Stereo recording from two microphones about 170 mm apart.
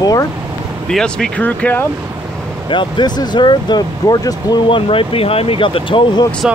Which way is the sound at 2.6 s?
30° left (ahead or behind).